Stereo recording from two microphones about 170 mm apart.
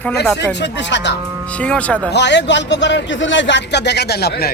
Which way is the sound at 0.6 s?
90° left.